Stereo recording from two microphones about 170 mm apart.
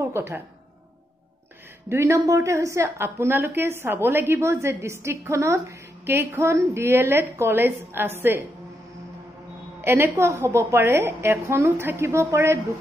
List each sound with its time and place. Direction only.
0.0 s a woman's voice: 15° right (ahead or behind)
1.9 s a woman's voice: 15° right (ahead or behind)
9.8 s a woman's voice: 15° right (ahead or behind)